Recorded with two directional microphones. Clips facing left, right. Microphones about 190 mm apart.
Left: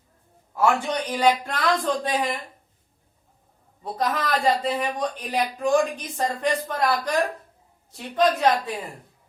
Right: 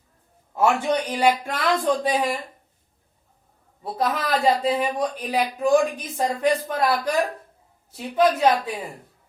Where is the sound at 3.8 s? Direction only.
Centre (ahead or behind).